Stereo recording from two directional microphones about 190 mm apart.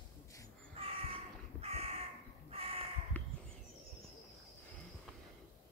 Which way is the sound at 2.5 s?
30° right (ahead or behind).